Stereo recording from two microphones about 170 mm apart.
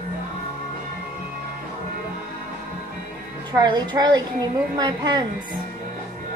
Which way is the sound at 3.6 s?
25° right (ahead or behind).